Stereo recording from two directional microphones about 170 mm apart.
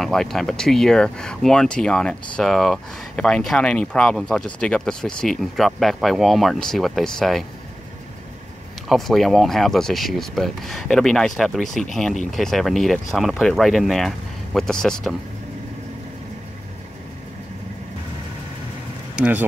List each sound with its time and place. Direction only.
0.0 s speech: centre (ahead or behind)
8.8 s speech: centre (ahead or behind)
19.1 s speech: 10° right (ahead or behind)